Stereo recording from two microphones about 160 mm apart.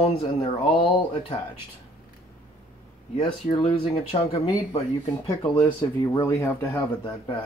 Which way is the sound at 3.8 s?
30° left (ahead or behind).